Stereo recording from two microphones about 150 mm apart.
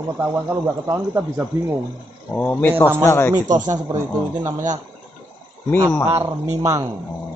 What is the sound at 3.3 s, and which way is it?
Speech, 25° right (ahead or behind).